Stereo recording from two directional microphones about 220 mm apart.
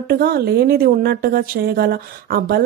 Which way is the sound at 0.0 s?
45° right (ahead or behind).